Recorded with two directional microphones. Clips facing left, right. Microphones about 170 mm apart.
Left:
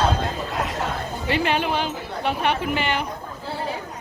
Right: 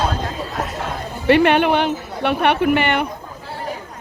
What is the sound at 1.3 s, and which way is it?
Speech, 65° right (ahead or behind).